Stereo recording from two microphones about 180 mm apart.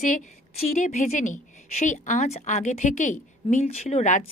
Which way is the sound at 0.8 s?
40° left (ahead or behind).